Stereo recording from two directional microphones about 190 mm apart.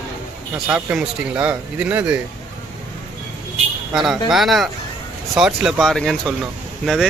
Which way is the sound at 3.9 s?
Centre (ahead or behind).